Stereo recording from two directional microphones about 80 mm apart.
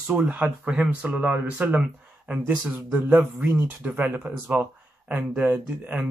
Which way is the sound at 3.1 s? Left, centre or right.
Right.